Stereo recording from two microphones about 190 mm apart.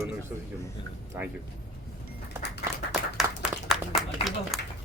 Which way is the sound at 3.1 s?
Centre (ahead or behind).